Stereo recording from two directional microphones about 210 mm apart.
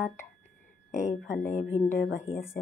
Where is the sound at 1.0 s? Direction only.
35° left (ahead or behind).